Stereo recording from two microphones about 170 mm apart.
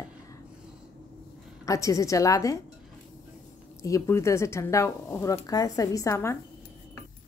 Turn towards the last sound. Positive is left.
turn(degrees=15)  # may be behind; listen again after turning